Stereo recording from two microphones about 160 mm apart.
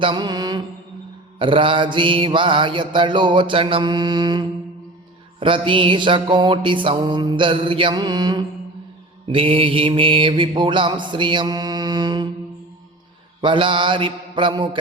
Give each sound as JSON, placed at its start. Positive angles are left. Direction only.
{"t": 0.0, "sound": "mantra", "side_deg": -30}
{"t": 13.4, "sound": "mantra", "side_deg": -30}